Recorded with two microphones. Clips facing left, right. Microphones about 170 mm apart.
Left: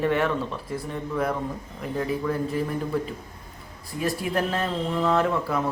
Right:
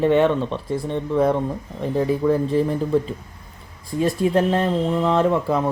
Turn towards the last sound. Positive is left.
turn(degrees=-25)  # may be behind; listen again after turning